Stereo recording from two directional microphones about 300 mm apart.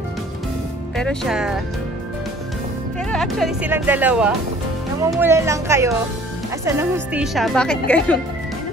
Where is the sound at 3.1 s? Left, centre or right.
Centre.